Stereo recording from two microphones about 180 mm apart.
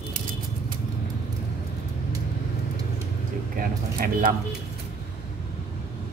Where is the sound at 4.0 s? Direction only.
50° right (ahead or behind).